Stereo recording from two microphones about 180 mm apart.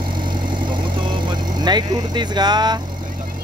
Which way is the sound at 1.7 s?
25° right (ahead or behind).